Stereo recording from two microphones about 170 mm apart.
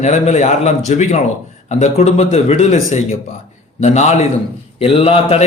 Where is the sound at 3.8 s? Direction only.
40° left (ahead or behind).